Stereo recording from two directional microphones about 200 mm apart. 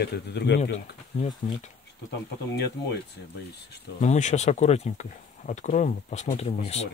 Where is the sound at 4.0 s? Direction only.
35° left (ahead or behind).